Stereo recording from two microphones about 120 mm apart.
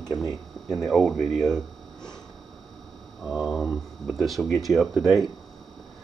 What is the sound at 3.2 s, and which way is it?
Speech, 5° right (ahead or behind).